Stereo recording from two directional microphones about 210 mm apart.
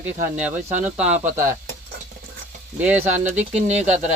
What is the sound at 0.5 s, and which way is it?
Speech, 35° right (ahead or behind).